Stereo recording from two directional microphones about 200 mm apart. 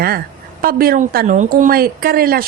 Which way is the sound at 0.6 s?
45° right (ahead or behind).